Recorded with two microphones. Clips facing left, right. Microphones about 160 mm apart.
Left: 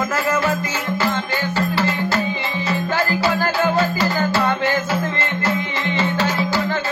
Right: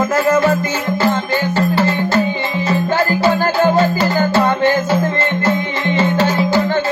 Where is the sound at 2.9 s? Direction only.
45° right (ahead or behind).